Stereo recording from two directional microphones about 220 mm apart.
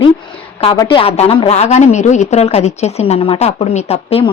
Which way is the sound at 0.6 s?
20° left (ahead or behind).